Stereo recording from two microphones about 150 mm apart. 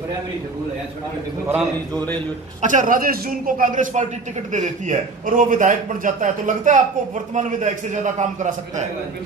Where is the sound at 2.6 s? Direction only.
60° right (ahead or behind).